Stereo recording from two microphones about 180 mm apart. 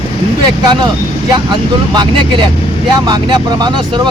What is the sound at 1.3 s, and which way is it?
Speech, 25° right (ahead or behind).